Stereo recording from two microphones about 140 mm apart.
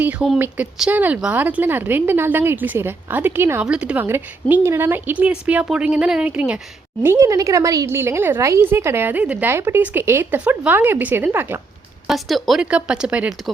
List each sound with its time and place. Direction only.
0.0 s a woman's voice: 10° right (ahead or behind)
7.0 s a woman's voice: 20° right (ahead or behind)
12.0 s a woman's voice: centre (ahead or behind)